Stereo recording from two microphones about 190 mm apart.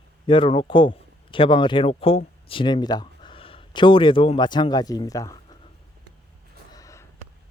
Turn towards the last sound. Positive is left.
turn(degrees=15)  # may be behind; listen again after turning